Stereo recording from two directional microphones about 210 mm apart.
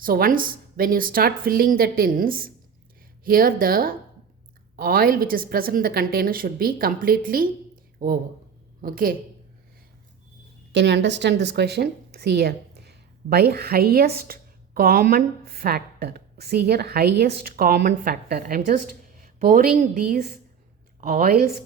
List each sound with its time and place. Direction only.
0.0 s a woman's voice: 45° right (ahead or behind)
10.7 s a woman's voice: 55° right (ahead or behind)